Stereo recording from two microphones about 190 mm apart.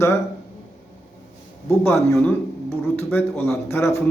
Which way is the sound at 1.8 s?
10° left (ahead or behind).